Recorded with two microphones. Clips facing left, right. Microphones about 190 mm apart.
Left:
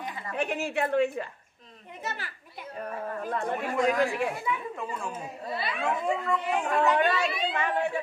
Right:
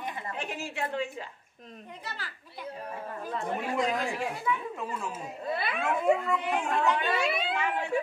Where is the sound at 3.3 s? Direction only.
55° left (ahead or behind).